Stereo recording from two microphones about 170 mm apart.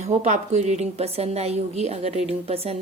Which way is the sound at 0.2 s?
40° right (ahead or behind).